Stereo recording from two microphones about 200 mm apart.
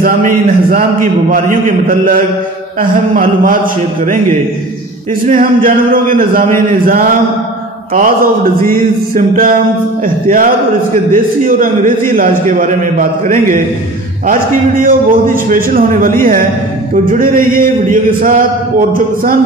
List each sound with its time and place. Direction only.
0.0 s a man's voice: 45° right (ahead or behind)
8.6 s speech: 45° right (ahead or behind)
14.8 s speech: 45° right (ahead or behind)